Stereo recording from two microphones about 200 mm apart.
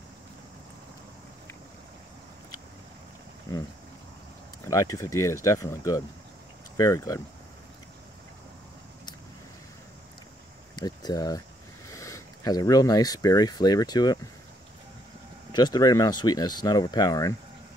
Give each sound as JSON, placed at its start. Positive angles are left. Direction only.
{"t": 4.6, "sound": "speech", "side_deg": 15}
{"t": 10.8, "sound": "speech", "side_deg": 20}
{"t": 15.5, "sound": "speech", "side_deg": 20}